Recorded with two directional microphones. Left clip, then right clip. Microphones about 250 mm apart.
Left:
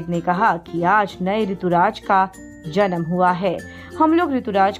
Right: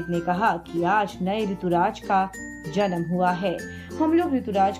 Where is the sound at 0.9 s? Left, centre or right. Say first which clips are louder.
Left 5 dB; centre.